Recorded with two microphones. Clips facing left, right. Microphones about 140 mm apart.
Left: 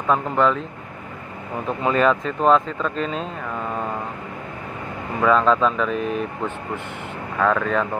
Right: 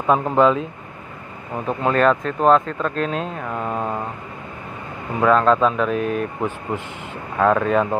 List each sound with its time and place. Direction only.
0.0 s speech: 20° right (ahead or behind)
1.7 s speech: centre (ahead or behind)
3.4 s mantra: 10° right (ahead or behind)
5.2 s speech: 5° right (ahead or behind)
7.3 s speech: 15° right (ahead or behind)